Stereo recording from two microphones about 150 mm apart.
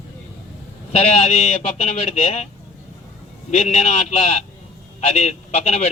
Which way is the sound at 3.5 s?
40° left (ahead or behind).